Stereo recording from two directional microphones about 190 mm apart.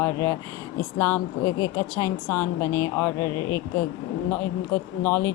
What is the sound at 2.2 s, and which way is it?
Speech, 10° left (ahead or behind).